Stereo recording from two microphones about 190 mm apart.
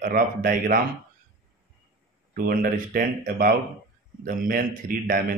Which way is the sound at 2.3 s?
50° right (ahead or behind).